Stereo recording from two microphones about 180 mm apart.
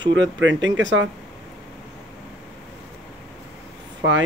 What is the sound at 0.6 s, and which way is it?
Speech, 90° right.